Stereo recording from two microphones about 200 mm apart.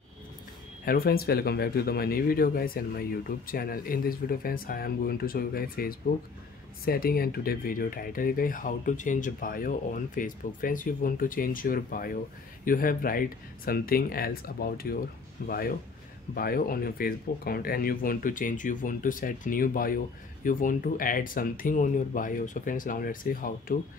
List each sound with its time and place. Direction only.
0.8 s speech: 50° left (ahead or behind)